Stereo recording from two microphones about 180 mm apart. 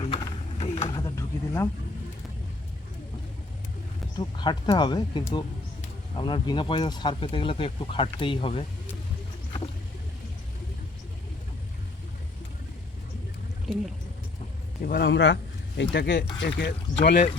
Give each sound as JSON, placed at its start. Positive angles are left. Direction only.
{"t": 0.0, "sound": "vehicle", "side_deg": 30}
{"t": 4.2, "sound": "speech", "side_deg": 25}
{"t": 14.8, "sound": "a man's voice", "side_deg": 55}
{"t": 15.0, "sound": "a man's voice", "side_deg": 85}